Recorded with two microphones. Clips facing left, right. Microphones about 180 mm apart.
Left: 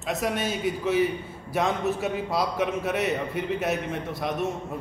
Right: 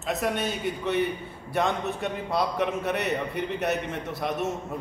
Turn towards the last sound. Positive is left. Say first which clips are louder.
# left 1 dB
turn(degrees=0)  # may be behind; listen again after turning